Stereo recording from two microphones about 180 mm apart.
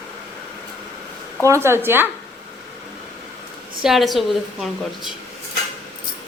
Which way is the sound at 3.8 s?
Centre (ahead or behind).